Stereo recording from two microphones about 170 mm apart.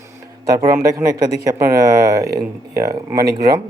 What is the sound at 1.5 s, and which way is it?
Speech, 20° right (ahead or behind).